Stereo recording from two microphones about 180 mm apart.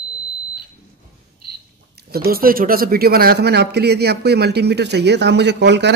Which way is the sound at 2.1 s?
55° right (ahead or behind).